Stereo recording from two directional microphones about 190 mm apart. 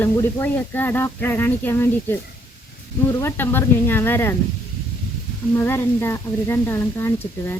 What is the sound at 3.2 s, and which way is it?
Speech, 10° left (ahead or behind).